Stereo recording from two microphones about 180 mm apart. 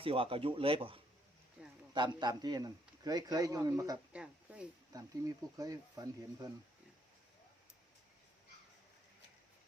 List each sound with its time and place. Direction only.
0.0 s a man's voice: 30° right (ahead or behind)
4.1 s speech: 5° right (ahead or behind)
5.5 s a man's voice: 20° right (ahead or behind)